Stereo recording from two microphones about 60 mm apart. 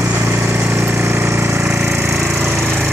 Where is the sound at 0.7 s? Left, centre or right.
Right.